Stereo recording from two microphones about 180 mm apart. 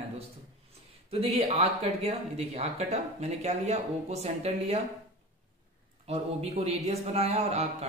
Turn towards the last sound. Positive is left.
turn(degrees=-40)  # may be behind; listen again after turning